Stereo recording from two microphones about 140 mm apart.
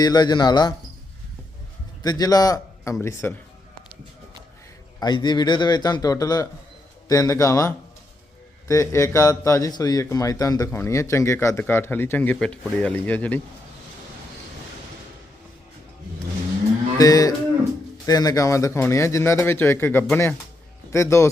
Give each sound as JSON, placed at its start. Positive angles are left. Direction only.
{"t": 0.0, "sound": "speech", "side_deg": 30}
{"t": 2.0, "sound": "a man's voice", "side_deg": 30}
{"t": 4.9, "sound": "speech", "side_deg": 30}
{"t": 17.0, "sound": "speech", "side_deg": 25}